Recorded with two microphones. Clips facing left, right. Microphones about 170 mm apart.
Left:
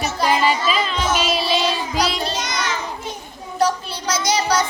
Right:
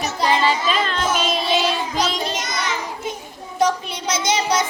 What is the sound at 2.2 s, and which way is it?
Child singing, 20° right (ahead or behind).